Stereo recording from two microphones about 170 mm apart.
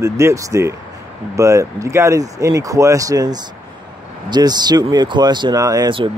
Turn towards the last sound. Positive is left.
turn(degrees=-20)  # may be behind; listen again after turning